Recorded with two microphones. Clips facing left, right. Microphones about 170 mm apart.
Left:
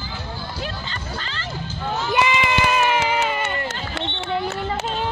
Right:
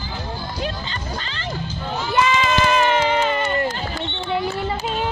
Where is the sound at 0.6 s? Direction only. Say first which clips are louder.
Right 3 dB; 20° right (ahead or behind).